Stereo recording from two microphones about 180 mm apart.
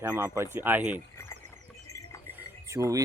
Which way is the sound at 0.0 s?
15° right (ahead or behind).